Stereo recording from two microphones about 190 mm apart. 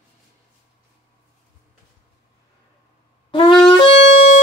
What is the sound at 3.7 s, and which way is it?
Wind instrument, 30° left (ahead or behind).